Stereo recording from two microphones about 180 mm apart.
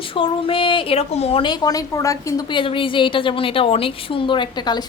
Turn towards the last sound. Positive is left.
turn(degrees=25)  # may be behind; listen again after turning